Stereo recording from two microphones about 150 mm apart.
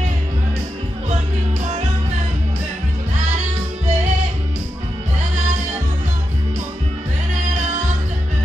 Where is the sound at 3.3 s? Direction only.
50° right (ahead or behind).